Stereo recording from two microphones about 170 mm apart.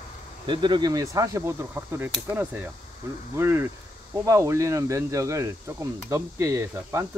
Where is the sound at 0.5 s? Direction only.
25° right (ahead or behind).